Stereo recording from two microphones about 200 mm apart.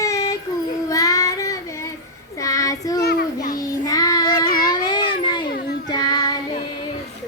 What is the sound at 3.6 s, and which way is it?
Child singing, 20° left (ahead or behind).